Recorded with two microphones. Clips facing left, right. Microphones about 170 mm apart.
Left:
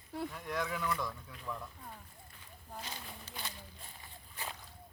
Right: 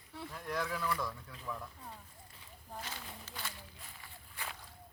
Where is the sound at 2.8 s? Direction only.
15° left (ahead or behind).